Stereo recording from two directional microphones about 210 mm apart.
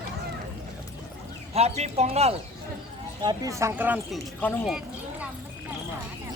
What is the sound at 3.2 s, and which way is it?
Speech, 15° right (ahead or behind).